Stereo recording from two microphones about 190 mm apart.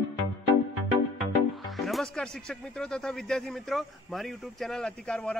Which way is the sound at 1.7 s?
Centre (ahead or behind).